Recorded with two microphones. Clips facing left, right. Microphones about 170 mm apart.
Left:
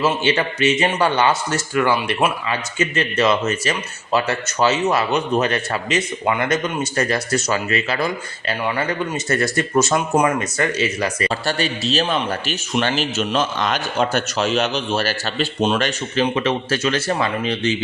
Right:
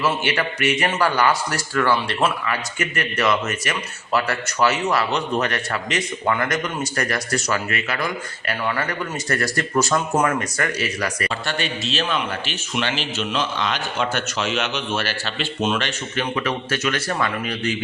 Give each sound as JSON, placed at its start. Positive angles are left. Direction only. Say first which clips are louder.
{"t": 0.0, "sound": "speech", "louder": "left 3 dB", "side_deg": 25}
{"t": 11.3, "sound": "a man's voice", "louder": "left 4 dB", "side_deg": 35}